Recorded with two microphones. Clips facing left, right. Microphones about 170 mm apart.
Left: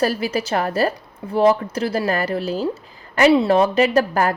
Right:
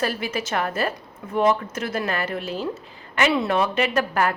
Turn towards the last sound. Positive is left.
turn(degrees=35)  # may be behind; listen again after turning